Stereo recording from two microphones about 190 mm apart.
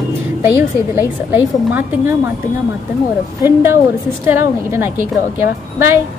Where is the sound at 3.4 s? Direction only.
10° right (ahead or behind).